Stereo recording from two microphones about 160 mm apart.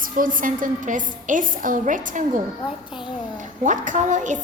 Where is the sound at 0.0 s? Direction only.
60° right (ahead or behind).